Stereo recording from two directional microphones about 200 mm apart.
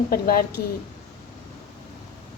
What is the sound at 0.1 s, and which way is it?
Speech, 50° left (ahead or behind).